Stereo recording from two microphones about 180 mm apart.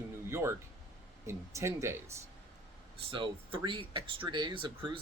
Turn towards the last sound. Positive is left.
turn(degrees=-25)  # may be behind; listen again after turning